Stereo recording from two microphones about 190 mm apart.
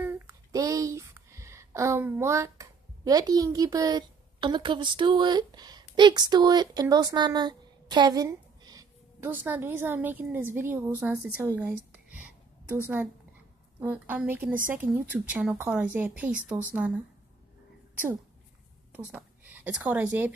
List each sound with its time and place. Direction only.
0.0 s speech: 15° right (ahead or behind)
18.9 s whispering: 10° right (ahead or behind)
19.8 s speech: 5° right (ahead or behind)